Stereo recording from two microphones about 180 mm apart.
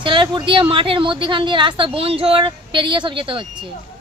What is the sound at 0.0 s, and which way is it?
A woman's voice, 25° right (ahead or behind).